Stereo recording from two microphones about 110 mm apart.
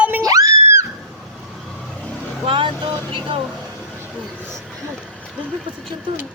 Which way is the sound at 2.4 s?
50° right (ahead or behind).